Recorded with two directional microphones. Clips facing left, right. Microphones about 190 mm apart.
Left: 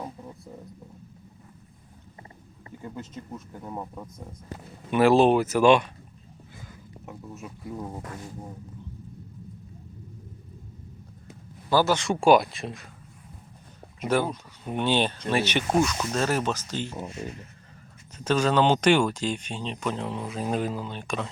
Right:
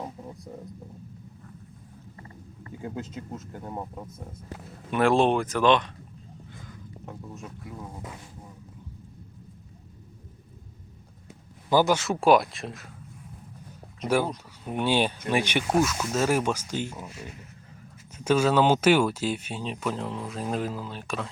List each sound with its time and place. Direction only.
3.3 s speech: 15° right (ahead or behind)
4.5 s speech: centre (ahead or behind)
7.0 s speech: 5° left (ahead or behind)
7.7 s speech: 25° left (ahead or behind)
11.7 s speech: 15° right (ahead or behind)
11.9 s speech: centre (ahead or behind)
14.3 s speech: 5° right (ahead or behind)
18.2 s speech: 10° right (ahead or behind)